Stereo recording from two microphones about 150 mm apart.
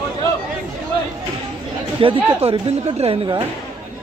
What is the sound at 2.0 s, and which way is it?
Speech, 35° right (ahead or behind).